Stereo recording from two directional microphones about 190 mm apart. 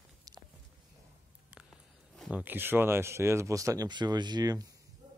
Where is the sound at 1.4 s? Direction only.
5° right (ahead or behind); by 4.7 s 20° right (ahead or behind).